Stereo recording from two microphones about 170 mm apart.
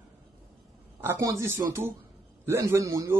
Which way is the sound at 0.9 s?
15° right (ahead or behind).